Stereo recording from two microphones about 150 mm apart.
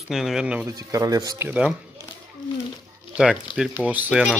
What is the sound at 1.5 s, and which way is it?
Speech, 5° right (ahead or behind).